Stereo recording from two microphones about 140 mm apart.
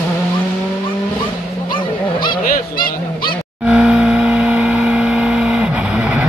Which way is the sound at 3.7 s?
5° right (ahead or behind).